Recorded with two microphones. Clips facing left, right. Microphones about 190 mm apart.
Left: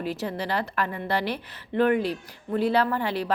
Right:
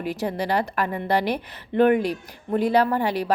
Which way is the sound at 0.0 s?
15° right (ahead or behind).